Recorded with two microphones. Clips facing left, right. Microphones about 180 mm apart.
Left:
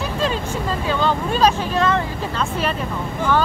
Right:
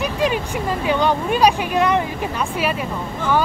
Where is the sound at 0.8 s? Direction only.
15° right (ahead or behind).